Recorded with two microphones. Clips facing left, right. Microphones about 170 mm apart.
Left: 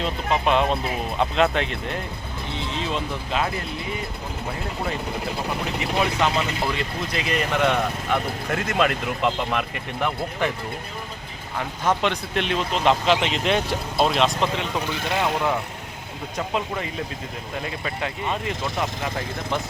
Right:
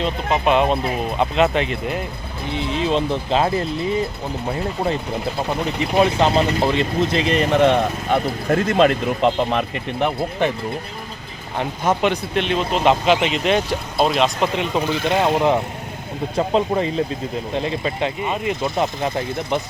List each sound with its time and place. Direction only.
0.4 s speech: 5° right (ahead or behind)
2.7 s speech: 25° right (ahead or behind)
6.0 s speech: 30° right (ahead or behind)
11.8 s speech: 10° right (ahead or behind)
14.5 s speech: 20° right (ahead or behind)
18.8 s speech: 30° right (ahead or behind)